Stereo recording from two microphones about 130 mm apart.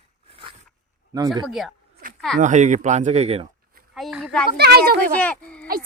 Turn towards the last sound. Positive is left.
turn(degrees=10)  # may be behind; listen again after turning